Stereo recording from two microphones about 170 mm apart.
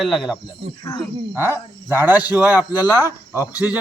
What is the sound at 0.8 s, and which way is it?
Speech, 25° left (ahead or behind).